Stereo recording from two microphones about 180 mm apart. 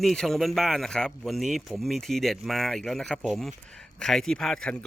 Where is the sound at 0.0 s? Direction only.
Centre (ahead or behind).